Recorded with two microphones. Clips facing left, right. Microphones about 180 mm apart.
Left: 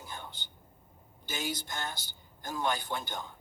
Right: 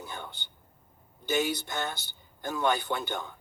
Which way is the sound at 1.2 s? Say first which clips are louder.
Right 8 dB; 65° right (ahead or behind).